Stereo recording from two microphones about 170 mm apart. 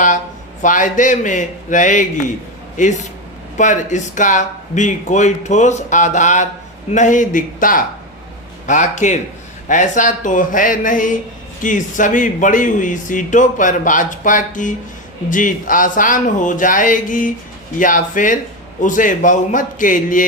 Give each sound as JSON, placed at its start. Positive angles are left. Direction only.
{"t": 0.6, "sound": "speech", "side_deg": 50}